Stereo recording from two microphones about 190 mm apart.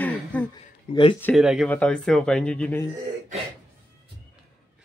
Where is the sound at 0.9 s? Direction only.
35° left (ahead or behind).